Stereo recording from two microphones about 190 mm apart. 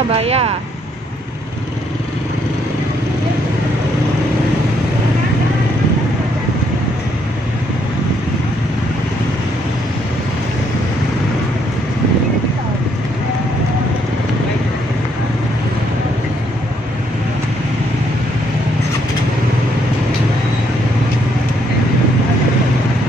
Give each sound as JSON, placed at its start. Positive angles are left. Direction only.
{"t": 0.1, "sound": "speech", "side_deg": -30}